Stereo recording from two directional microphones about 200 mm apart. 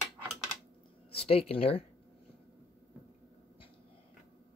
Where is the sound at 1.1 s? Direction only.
30° left (ahead or behind).